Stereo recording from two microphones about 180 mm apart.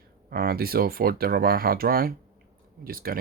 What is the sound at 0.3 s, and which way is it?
Speech, 55° right (ahead or behind).